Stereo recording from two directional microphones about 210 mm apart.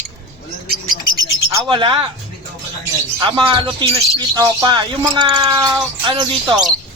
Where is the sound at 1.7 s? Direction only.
25° right (ahead or behind).